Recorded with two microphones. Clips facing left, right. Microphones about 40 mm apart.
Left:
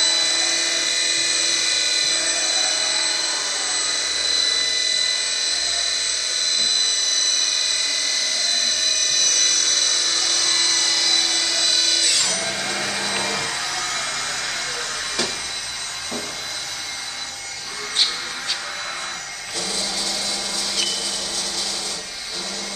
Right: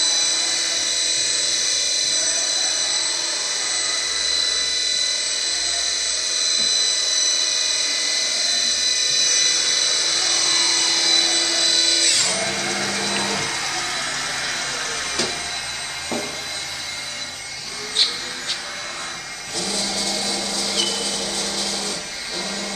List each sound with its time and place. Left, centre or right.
0.0 s helicopter: left
9.1 s helicopter: centre
12.3 s a sound: centre
13.2 s music: centre